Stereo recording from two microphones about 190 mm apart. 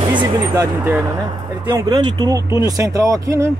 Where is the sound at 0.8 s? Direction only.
15° right (ahead or behind).